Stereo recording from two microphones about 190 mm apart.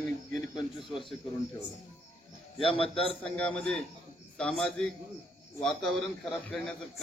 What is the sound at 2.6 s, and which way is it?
Speech, 30° left (ahead or behind).